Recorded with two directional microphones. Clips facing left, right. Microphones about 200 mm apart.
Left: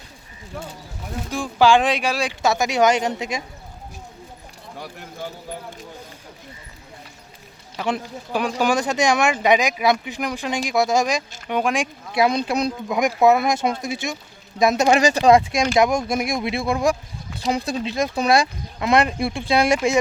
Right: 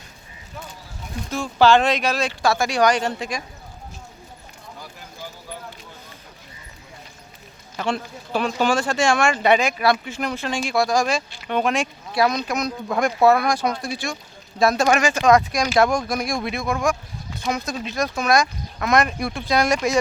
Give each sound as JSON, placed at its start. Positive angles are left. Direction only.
{"t": 1.3, "sound": "speech", "side_deg": 10}
{"t": 4.8, "sound": "a sound", "side_deg": 65}
{"t": 7.9, "sound": "speech", "side_deg": 15}
{"t": 12.9, "sound": "speech", "side_deg": 15}
{"t": 15.0, "sound": "speech", "side_deg": 35}